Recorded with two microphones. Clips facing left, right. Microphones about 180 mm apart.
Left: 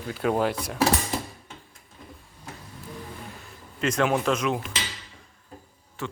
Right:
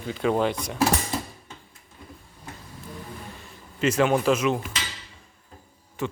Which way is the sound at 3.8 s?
5° right (ahead or behind).